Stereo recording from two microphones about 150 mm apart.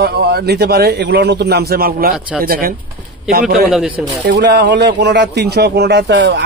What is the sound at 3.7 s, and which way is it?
Speech, centre (ahead or behind).